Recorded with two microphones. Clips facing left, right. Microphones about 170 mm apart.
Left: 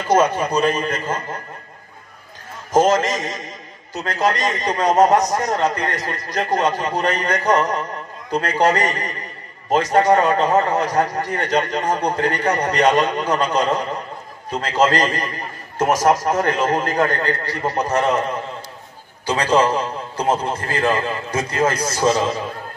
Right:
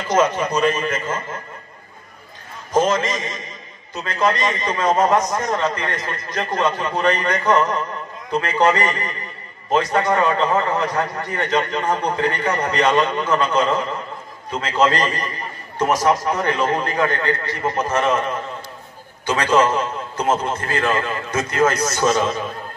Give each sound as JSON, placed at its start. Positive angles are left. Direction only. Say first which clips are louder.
{"t": 0.4, "sound": "a man's voice", "louder": "even", "side_deg": 35}
{"t": 2.7, "sound": "a man's voice", "louder": "left 3 dB", "side_deg": 40}
{"t": 19.2, "sound": "a man's voice", "louder": "even", "side_deg": 35}